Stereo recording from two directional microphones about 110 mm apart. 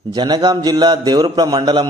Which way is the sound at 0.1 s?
40° right (ahead or behind).